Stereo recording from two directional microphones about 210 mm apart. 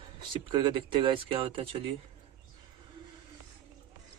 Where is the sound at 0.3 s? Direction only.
20° right (ahead or behind).